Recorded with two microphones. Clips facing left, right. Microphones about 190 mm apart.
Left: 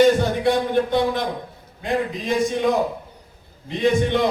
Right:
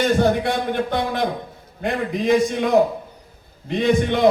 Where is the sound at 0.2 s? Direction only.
55° right (ahead or behind).